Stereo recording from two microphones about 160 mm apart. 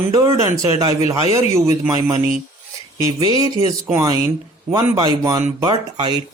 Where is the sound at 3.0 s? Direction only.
25° right (ahead or behind).